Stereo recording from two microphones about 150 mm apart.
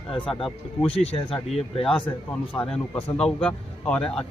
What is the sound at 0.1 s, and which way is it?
Speech, 35° left (ahead or behind).